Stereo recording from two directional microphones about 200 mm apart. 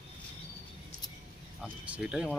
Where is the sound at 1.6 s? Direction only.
5° right (ahead or behind).